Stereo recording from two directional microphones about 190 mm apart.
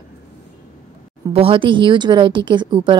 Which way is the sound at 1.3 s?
30° right (ahead or behind).